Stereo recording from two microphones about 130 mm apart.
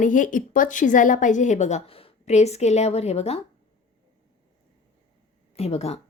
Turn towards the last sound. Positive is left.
turn(degrees=50)  # may be behind; listen again after turning